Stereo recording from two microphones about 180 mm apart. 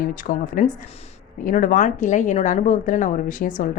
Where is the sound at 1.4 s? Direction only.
45° left (ahead or behind).